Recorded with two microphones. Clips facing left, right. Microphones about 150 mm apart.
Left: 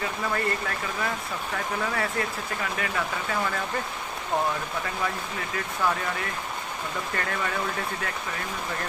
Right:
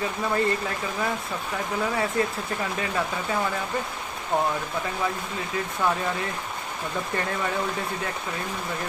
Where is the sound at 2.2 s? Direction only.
20° right (ahead or behind).